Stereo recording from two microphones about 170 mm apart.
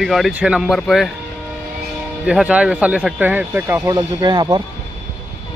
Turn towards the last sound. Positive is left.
turn(degrees=-25)  # may be behind; listen again after turning